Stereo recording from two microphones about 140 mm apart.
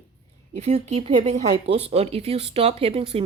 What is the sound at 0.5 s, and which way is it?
Speech, 55° right (ahead or behind).